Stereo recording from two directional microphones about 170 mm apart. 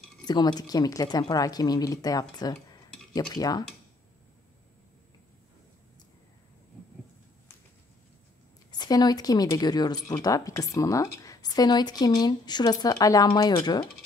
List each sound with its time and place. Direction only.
0.3 s speech: 25° left (ahead or behind)
8.7 s speech: 25° left (ahead or behind)